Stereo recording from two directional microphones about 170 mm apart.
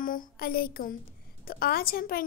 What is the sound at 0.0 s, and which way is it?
A woman's voice, 55° left (ahead or behind).